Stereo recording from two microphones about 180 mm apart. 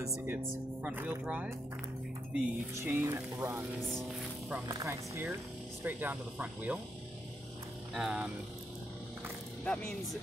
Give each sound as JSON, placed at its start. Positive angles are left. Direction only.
{"t": 0.0, "sound": "speech", "side_deg": -15}
{"t": 4.6, "sound": "speech", "side_deg": -15}
{"t": 7.9, "sound": "speech", "side_deg": -5}